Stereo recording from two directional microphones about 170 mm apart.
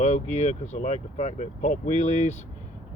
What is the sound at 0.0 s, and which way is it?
Speech, 40° left (ahead or behind).